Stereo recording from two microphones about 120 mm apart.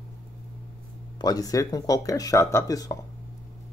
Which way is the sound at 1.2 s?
30° left (ahead or behind).